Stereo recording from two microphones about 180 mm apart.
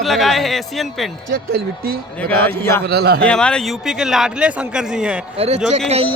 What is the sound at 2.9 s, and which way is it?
Speech, 60° right (ahead or behind).